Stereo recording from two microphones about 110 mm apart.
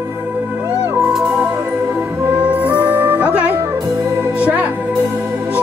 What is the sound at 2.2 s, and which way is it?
Music, 10° right (ahead or behind).